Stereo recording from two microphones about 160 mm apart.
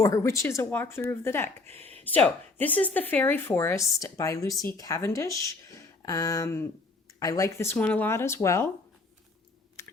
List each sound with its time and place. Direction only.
0.0 s speech: 20° left (ahead or behind)
6.0 s a sound: 20° left (ahead or behind)
7.2 s speech: 20° left (ahead or behind)